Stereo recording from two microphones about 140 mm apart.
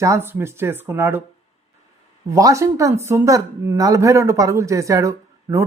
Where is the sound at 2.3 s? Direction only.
20° right (ahead or behind).